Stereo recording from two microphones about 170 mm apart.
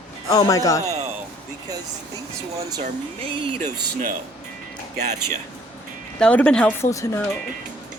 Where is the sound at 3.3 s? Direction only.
30° right (ahead or behind).